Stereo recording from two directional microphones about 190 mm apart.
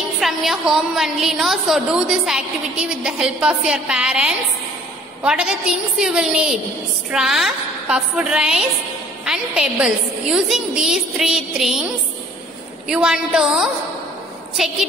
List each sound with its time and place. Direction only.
0.2 s a woman's voice: centre (ahead or behind)
12.8 s a woman's voice: 5° right (ahead or behind)